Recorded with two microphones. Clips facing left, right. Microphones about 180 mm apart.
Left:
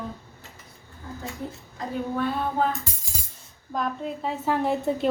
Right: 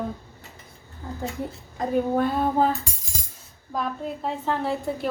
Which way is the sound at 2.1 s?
35° right (ahead or behind).